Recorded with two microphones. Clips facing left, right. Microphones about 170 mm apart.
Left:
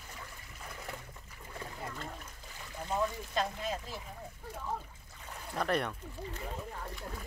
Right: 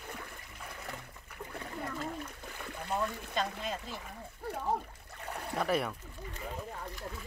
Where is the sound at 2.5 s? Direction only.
60° right (ahead or behind).